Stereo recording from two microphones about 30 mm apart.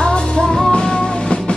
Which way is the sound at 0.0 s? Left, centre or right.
Left.